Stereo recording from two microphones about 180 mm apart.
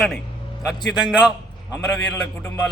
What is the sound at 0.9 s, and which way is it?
Speech, 5° right (ahead or behind).